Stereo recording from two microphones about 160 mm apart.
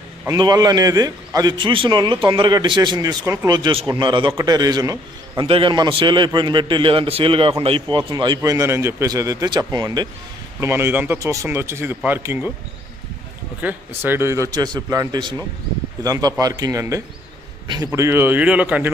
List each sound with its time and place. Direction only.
0.3 s a man's voice: 25° right (ahead or behind)
8.4 s a man's voice: 15° right (ahead or behind)
10.6 s speech: 15° right (ahead or behind)
13.6 s a man's voice: 10° right (ahead or behind)